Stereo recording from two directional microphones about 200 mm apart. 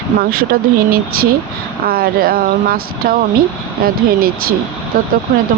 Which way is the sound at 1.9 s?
50° right (ahead or behind).